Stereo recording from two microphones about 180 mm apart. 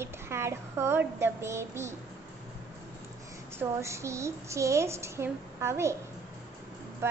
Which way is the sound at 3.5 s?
15° right (ahead or behind).